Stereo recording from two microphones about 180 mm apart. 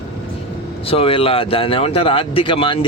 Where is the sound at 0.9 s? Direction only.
30° left (ahead or behind).